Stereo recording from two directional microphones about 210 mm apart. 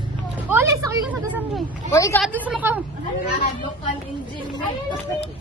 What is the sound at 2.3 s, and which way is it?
Speech, 5° right (ahead or behind).